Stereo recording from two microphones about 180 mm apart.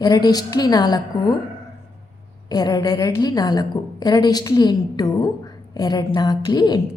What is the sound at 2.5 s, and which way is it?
A woman's voice, 20° left (ahead or behind).